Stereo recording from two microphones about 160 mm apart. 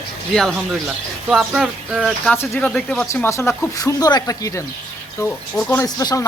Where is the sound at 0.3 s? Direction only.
Centre (ahead or behind).